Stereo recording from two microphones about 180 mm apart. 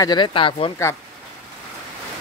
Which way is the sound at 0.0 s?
25° left (ahead or behind).